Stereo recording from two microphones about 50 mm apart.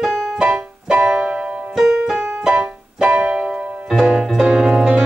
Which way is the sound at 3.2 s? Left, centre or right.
Centre.